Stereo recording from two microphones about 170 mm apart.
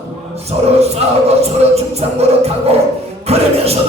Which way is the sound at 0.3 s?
40° right (ahead or behind).